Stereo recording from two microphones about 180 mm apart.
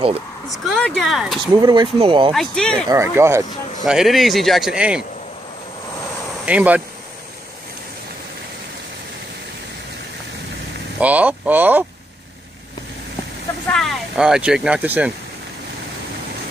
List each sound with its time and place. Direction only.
0.7 s a man's voice: 5° left (ahead or behind)
1.5 s speech: 25° right (ahead or behind)
2.3 s a man's voice: 5° left (ahead or behind)
2.9 s speech: 15° right (ahead or behind)
3.8 s a man's voice: centre (ahead or behind)
6.4 s speech: 10° right (ahead or behind)
11.0 s speech: 10° right (ahead or behind)
13.7 s speech: centre (ahead or behind)